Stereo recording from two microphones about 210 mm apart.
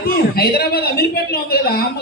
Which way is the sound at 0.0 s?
50° left (ahead or behind).